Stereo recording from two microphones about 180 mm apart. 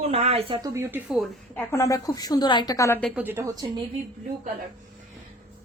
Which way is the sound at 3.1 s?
10° right (ahead or behind).